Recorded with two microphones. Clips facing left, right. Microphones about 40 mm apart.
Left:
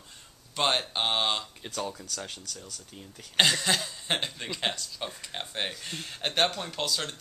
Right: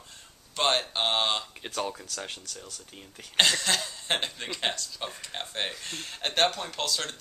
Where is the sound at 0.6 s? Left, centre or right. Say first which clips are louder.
Right 1 dB; centre.